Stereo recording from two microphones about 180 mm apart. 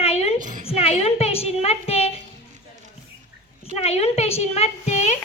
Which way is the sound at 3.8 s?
35° left (ahead or behind).